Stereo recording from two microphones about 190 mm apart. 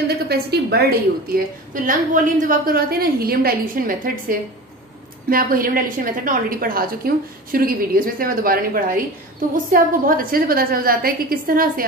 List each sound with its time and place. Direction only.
0.3 s a woman's voice: 55° right (ahead or behind)